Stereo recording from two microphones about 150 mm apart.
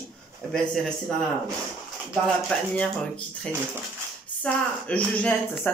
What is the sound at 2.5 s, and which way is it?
Speech, 5° left (ahead or behind).